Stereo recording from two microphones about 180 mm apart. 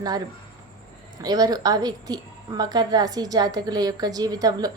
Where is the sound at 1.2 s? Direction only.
20° right (ahead or behind).